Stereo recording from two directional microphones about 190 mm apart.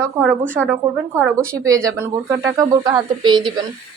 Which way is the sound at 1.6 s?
15° right (ahead or behind).